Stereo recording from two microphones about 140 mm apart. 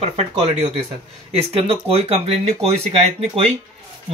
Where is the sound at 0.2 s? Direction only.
45° right (ahead or behind).